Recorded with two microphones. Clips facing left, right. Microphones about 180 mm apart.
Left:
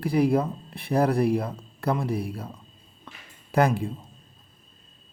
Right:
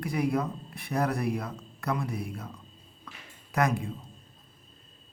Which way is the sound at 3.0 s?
30° left (ahead or behind).